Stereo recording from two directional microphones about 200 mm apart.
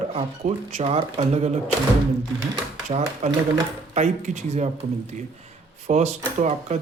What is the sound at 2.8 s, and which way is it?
Speech, 35° right (ahead or behind).